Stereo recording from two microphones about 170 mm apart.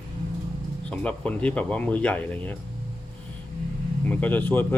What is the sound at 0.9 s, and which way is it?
Speech, 5° left (ahead or behind).